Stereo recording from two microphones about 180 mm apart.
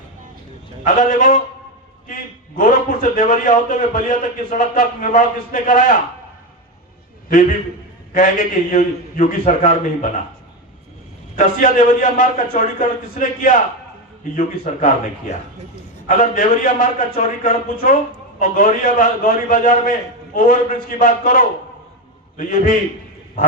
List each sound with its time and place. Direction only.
0.9 s a man's voice: 45° left (ahead or behind)
2.6 s a man's voice: 50° left (ahead or behind)
8.1 s a man's voice: 45° left (ahead or behind)
11.3 s a man's voice: 45° left (ahead or behind)